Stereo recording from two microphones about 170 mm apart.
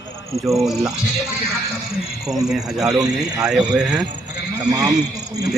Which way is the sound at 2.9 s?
20° right (ahead or behind).